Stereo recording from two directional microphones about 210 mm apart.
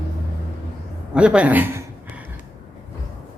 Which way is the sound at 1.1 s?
5° right (ahead or behind).